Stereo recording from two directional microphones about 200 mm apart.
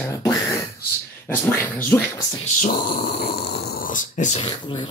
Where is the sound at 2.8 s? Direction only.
50° left (ahead or behind).